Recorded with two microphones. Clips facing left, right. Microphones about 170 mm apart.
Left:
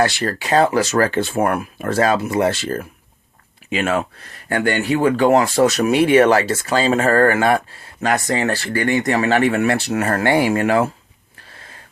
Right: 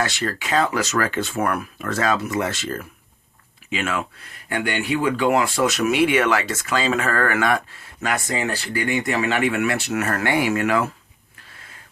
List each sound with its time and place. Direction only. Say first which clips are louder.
0.0 s speech: left 6 dB; 35° left (ahead or behind)